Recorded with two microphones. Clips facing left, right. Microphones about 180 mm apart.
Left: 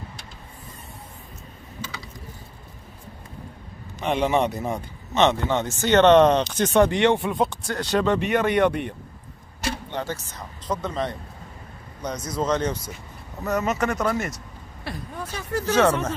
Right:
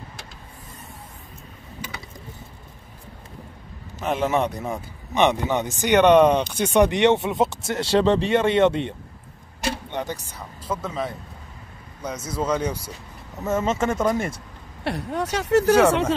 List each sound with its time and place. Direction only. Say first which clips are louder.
4.0 s speech: left 1 dB; centre (ahead or behind)
5.1 s speech: even; 15° right (ahead or behind)
13.4 s speech: right 1 dB; 25° right (ahead or behind)
14.8 s speech: right 8 dB; 75° right (ahead or behind)